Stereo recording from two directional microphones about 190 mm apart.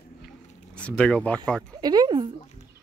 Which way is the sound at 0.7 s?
5° left (ahead or behind).